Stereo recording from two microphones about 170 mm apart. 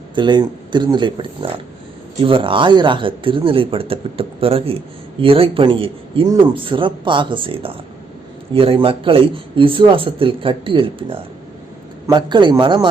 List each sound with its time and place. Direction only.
0.2 s speech: 25° right (ahead or behind)